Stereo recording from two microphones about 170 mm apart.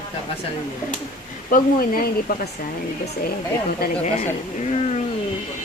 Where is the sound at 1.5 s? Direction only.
55° left (ahead or behind).